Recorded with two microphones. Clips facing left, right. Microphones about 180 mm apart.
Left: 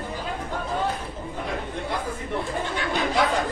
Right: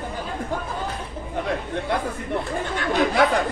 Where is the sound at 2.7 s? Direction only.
60° right (ahead or behind).